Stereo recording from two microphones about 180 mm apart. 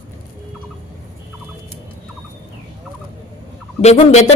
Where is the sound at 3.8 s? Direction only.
40° left (ahead or behind).